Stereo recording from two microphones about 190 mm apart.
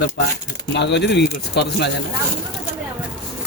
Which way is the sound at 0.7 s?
65° left (ahead or behind).